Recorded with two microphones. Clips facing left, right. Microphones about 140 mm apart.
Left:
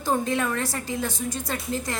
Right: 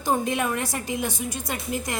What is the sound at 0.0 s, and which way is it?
A woman's voice, 15° right (ahead or behind).